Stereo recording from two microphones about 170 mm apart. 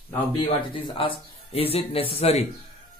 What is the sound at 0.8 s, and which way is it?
A man's voice, 30° left (ahead or behind).